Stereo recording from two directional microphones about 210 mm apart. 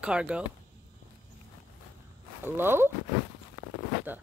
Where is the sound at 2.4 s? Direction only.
10° right (ahead or behind).